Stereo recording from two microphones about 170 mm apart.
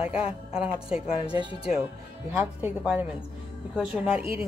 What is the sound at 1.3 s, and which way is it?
Speech, 25° right (ahead or behind).